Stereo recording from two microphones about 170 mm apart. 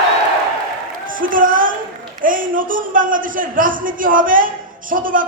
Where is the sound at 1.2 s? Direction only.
55° right (ahead or behind).